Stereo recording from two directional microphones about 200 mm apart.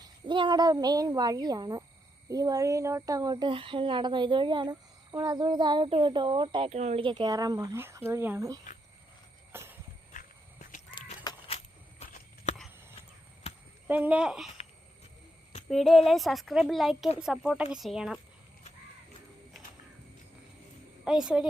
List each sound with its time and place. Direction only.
0.3 s speech: 25° right (ahead or behind)
9.5 s a sound: 10° right (ahead or behind)
10.1 s a sound: 40° left (ahead or behind)
10.9 s crow: 20° left (ahead or behind)
13.8 s speech: 10° right (ahead or behind)
15.7 s speech: centre (ahead or behind)
21.0 s a woman's voice: 5° right (ahead or behind)